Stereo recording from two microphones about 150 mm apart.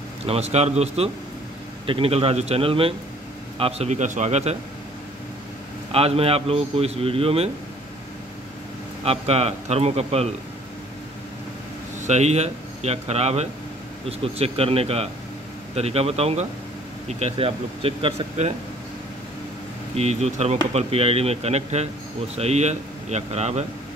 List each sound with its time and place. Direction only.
0.3 s a man's voice: 45° right (ahead or behind)
5.9 s speech: 40° right (ahead or behind)
9.0 s a man's voice: 45° right (ahead or behind)
12.0 s a man's voice: 50° right (ahead or behind)
20.0 s a man's voice: 45° right (ahead or behind)